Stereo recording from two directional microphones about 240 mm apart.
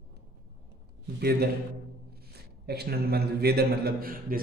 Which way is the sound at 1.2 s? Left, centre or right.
Right.